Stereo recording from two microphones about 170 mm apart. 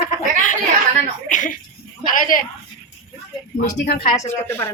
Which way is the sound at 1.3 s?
50° left (ahead or behind).